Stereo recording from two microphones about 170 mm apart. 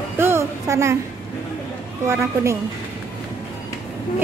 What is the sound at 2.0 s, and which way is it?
Speech, 15° right (ahead or behind).